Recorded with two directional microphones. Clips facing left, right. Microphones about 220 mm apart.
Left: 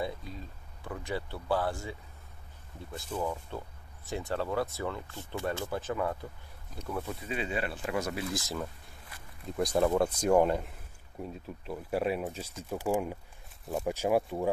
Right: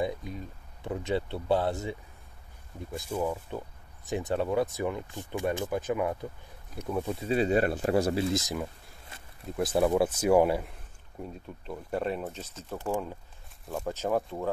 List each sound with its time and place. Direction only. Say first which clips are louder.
0.0 s speech: right 4 dB; 20° right (ahead or behind)
2.9 s speech: right 3 dB; 10° right (ahead or behind)
7.2 s speech: right 11 dB; 40° right (ahead or behind); by 8.5 s 20° right (ahead or behind)
9.1 s a sound: right 2 dB; 25° right (ahead or behind)
9.6 s speech: right 2 dB; 5° right (ahead or behind)
11.1 s speech: even; 5° left (ahead or behind)